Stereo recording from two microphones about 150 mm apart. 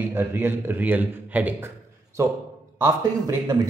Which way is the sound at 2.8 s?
25° right (ahead or behind).